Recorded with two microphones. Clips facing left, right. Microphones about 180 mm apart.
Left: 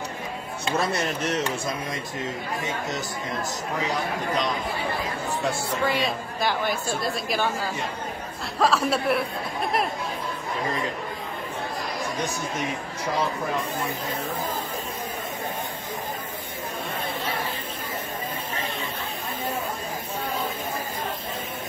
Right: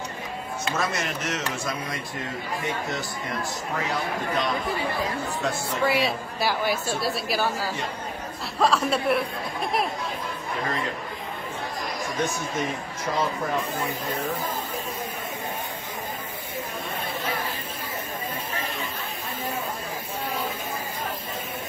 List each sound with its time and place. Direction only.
0.7 s a man's voice: 30° left (ahead or behind)
5.9 s a woman's voice: 10° right (ahead or behind)